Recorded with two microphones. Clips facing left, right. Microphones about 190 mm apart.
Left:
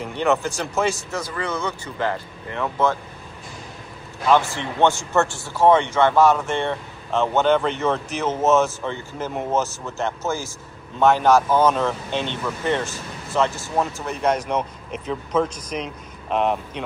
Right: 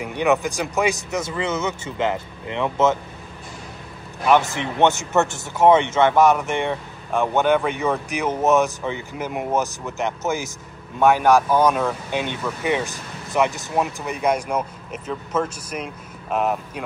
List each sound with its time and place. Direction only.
0.0 s a man's voice: 15° right (ahead or behind)
4.3 s speech: 20° right (ahead or behind)